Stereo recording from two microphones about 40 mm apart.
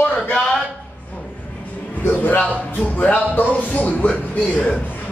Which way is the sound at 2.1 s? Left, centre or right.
Left.